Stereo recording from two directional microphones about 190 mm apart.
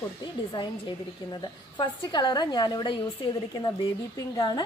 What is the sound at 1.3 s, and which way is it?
A woman's voice, 25° left (ahead or behind).